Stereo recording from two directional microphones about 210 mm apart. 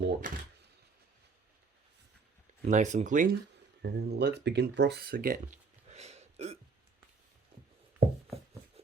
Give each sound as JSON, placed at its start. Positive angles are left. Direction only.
{"t": 0.0, "sound": "speech", "side_deg": -40}
{"t": 2.6, "sound": "speech", "side_deg": -35}
{"t": 3.8, "sound": "speech", "side_deg": -55}
{"t": 5.9, "sound": "hiccup", "side_deg": -30}